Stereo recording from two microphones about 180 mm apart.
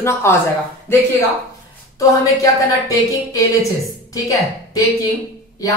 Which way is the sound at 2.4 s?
20° left (ahead or behind).